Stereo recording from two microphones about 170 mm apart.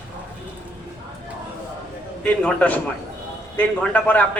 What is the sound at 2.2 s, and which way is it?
A man's voice, 5° left (ahead or behind).